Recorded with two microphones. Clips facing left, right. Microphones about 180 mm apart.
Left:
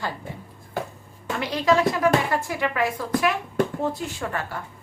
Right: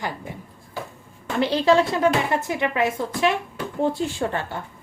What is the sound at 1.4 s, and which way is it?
A woman's voice, 30° right (ahead or behind).